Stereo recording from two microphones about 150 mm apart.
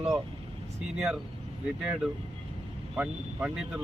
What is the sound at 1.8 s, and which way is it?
Speech, 10° right (ahead or behind).